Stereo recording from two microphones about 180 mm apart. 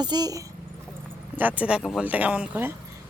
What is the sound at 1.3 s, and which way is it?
Speech, 10° right (ahead or behind).